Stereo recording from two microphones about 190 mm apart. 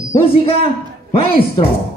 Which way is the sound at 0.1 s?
30° left (ahead or behind).